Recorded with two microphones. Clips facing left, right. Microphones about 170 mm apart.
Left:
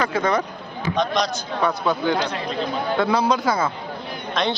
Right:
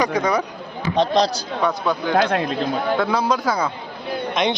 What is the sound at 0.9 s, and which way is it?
Speech, 30° right (ahead or behind).